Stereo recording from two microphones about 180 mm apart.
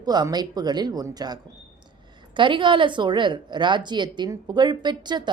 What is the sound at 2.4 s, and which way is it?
A woman's voice, 25° right (ahead or behind).